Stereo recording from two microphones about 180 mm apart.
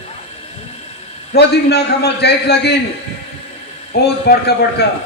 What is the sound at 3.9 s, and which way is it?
Speech, 65° left (ahead or behind).